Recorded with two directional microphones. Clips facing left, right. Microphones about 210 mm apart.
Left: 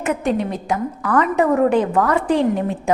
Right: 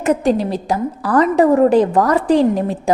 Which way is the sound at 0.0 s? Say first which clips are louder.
Right 4 dB; 35° right (ahead or behind).